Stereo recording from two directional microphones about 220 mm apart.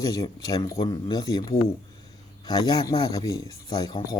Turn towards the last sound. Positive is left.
turn(degrees=15)  # may be behind; listen again after turning